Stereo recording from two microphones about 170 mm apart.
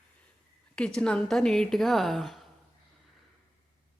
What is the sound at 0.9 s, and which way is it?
A woman's voice, centre (ahead or behind).